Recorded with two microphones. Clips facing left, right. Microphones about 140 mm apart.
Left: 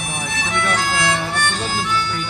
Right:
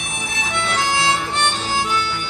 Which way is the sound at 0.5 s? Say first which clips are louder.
Even; 25° right (ahead or behind).